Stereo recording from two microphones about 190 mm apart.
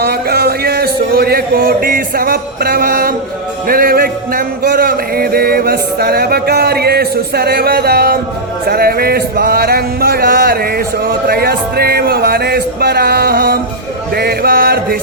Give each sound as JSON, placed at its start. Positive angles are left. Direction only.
{"t": 0.0, "sound": "speech", "side_deg": -55}